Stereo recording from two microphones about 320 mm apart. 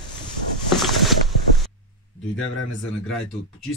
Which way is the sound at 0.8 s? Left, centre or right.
Centre.